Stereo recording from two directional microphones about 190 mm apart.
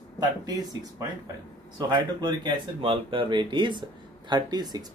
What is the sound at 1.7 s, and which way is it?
Speech, 20° right (ahead or behind).